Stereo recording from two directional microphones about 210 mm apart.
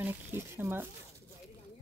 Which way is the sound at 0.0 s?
10° right (ahead or behind).